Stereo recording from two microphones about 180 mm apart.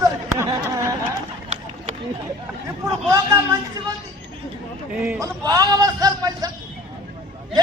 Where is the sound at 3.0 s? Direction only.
20° right (ahead or behind).